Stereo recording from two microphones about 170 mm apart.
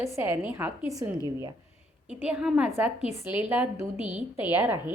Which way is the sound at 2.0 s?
5° right (ahead or behind).